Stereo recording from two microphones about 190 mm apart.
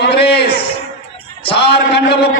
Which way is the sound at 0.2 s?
55° left (ahead or behind).